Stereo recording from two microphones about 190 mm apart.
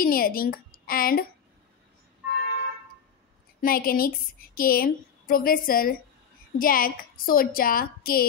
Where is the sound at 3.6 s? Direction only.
50° left (ahead or behind).